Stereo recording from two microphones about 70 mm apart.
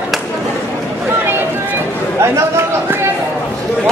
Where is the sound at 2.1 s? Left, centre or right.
Right.